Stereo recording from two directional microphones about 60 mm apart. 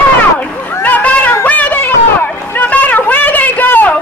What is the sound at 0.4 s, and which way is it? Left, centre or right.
Chatter, left.